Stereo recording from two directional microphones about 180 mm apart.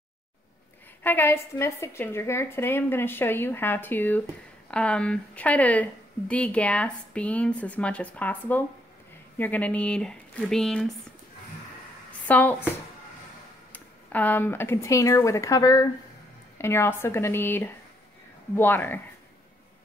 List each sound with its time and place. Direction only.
1.0 s speech: 10° left (ahead or behind)
12.1 s a woman's voice: 10° left (ahead or behind)
13.7 s speech: 10° left (ahead or behind)